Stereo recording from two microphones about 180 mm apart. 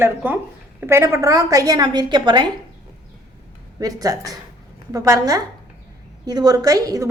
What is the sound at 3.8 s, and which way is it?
A woman's voice, 20° right (ahead or behind).